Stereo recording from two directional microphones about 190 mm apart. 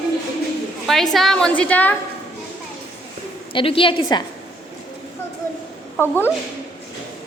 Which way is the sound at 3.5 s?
25° left (ahead or behind).